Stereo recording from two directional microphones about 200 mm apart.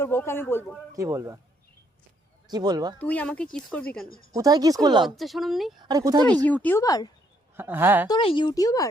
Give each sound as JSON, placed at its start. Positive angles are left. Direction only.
{"t": 0.0, "sound": "speech", "side_deg": 10}
{"t": 0.9, "sound": "speech", "side_deg": -15}
{"t": 2.5, "sound": "speech", "side_deg": -20}
{"t": 3.0, "sound": "a woman's voice", "side_deg": 5}
{"t": 4.4, "sound": "speech", "side_deg": -20}
{"t": 5.0, "sound": "a woman's voice", "side_deg": 0}
{"t": 5.8, "sound": "speech", "side_deg": -20}
{"t": 6.2, "sound": "speech", "side_deg": 5}
{"t": 7.5, "sound": "speech", "side_deg": -10}
{"t": 8.0, "sound": "speech", "side_deg": 25}